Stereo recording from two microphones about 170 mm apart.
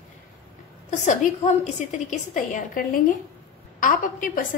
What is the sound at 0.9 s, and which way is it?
A woman's voice, 45° left (ahead or behind).